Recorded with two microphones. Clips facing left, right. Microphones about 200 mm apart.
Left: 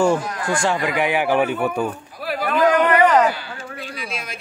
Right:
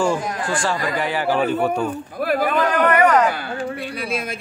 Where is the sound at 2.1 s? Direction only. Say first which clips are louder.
Right 10 dB; 55° right (ahead or behind).